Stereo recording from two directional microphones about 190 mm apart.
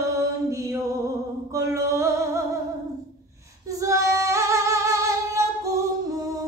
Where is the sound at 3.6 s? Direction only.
15° right (ahead or behind).